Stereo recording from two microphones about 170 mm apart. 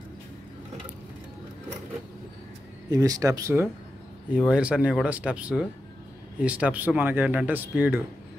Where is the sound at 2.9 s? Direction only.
20° right (ahead or behind).